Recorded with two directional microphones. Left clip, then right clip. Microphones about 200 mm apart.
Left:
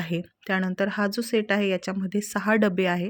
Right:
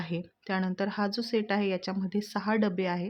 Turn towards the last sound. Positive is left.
turn(degrees=20)  # may be behind; listen again after turning